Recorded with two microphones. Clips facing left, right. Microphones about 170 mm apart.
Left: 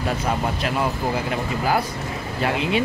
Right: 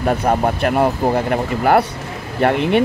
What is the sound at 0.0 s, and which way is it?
Speech, 55° right (ahead or behind).